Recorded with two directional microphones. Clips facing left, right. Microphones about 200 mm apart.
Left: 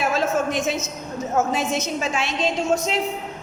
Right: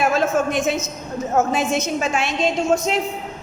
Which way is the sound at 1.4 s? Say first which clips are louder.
Right 3 dB; 50° right (ahead or behind).